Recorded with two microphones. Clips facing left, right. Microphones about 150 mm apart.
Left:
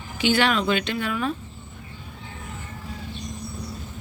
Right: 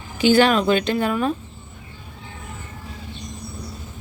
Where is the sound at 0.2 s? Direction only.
40° right (ahead or behind).